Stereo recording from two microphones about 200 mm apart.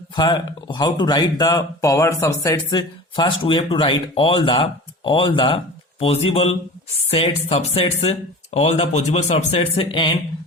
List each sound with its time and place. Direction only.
0.2 s a man's voice: 20° left (ahead or behind)